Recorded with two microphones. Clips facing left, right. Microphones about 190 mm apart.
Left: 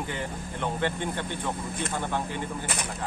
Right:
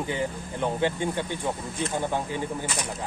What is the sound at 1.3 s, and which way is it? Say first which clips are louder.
Speech: right 2 dB; 55° left (ahead or behind).